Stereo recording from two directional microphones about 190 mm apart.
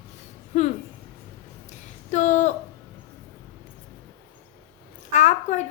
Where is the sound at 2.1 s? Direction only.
40° left (ahead or behind).